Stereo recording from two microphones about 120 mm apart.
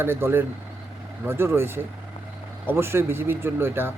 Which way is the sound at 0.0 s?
20° right (ahead or behind).